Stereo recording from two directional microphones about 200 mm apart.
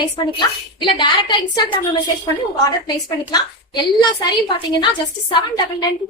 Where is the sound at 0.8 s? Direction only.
25° left (ahead or behind).